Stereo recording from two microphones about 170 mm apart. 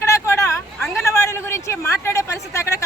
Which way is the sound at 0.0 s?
15° left (ahead or behind).